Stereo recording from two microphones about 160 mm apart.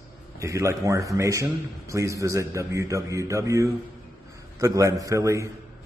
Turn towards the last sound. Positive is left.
turn(degrees=-20)  # may be behind; listen again after turning